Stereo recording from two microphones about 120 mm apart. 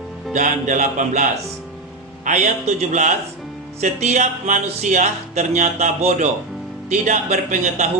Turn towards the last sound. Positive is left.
turn(degrees=-80)